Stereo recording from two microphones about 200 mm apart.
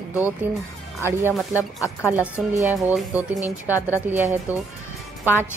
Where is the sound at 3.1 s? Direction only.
15° left (ahead or behind).